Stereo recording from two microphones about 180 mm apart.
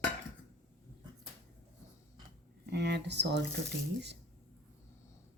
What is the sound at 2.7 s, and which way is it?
Speech, 70° right (ahead or behind).